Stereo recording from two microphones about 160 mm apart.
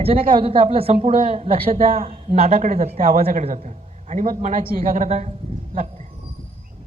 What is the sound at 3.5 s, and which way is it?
A man's voice, 45° right (ahead or behind).